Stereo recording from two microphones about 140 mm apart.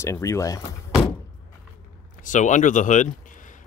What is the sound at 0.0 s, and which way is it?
Speech, 20° left (ahead or behind).